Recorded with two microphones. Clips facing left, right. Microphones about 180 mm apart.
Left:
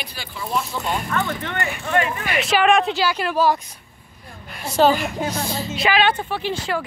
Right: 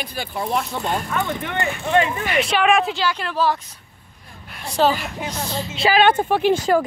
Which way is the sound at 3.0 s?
10° left (ahead or behind).